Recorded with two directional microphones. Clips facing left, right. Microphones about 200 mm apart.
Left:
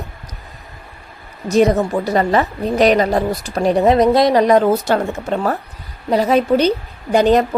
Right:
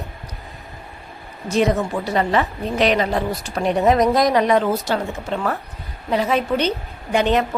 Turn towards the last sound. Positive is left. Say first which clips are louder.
# left 5 dB
turn(degrees=40)  # may be behind; listen again after turning